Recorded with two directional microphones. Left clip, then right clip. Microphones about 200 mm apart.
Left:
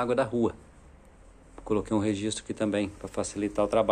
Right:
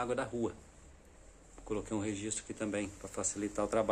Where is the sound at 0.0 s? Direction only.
15° left (ahead or behind).